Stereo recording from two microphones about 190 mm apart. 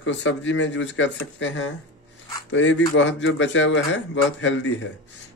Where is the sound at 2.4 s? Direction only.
70° left (ahead or behind).